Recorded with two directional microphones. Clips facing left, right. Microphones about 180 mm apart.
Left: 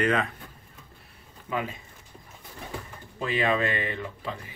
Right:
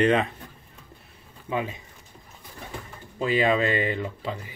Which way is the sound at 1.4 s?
25° right (ahead or behind).